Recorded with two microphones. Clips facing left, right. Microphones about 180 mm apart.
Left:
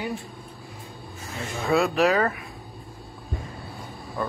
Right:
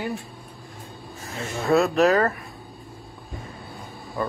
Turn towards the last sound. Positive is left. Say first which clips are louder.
# right 2 dB
turn(degrees=-5)  # may be behind; listen again after turning